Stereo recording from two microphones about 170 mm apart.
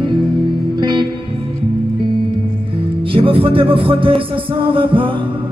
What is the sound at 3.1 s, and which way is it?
Music, 30° right (ahead or behind).